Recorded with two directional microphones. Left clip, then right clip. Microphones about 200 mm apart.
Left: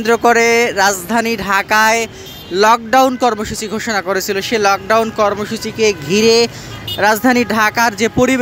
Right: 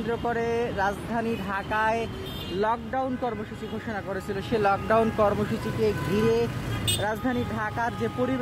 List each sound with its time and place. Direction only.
0.0 s speech: 30° left (ahead or behind)
2.6 s speech: 30° left (ahead or behind)